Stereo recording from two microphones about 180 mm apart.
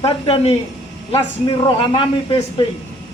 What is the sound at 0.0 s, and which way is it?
A man's voice, 35° left (ahead or behind).